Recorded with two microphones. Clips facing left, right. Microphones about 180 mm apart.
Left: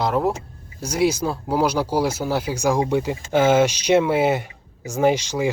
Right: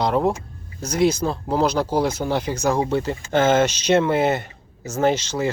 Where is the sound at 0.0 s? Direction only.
5° left (ahead or behind).